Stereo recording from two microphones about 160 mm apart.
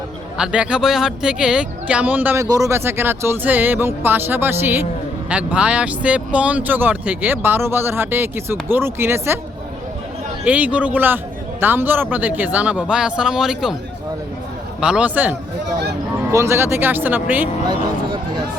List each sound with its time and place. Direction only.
0.3 s speech: 5° right (ahead or behind)
10.4 s speech: 10° right (ahead or behind)
14.8 s speech: 5° right (ahead or behind)
17.7 s a sound: 25° right (ahead or behind)